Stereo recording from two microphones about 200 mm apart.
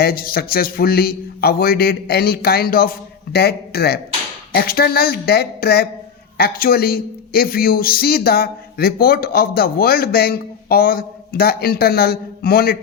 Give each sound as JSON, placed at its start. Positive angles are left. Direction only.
{"t": 0.0, "sound": "a man's voice", "side_deg": 50}